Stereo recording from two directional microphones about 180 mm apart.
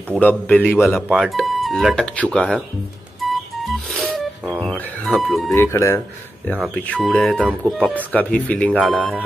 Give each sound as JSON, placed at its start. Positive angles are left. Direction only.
{"t": 0.2, "sound": "speech", "side_deg": 10}
{"t": 3.2, "sound": "music", "side_deg": 0}
{"t": 5.5, "sound": "speech", "side_deg": 15}
{"t": 6.6, "sound": "speech", "side_deg": 0}
{"t": 8.1, "sound": "speech", "side_deg": 10}